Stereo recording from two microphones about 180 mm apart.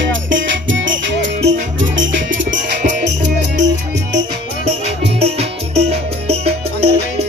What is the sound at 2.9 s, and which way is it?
Music, 75° right (ahead or behind).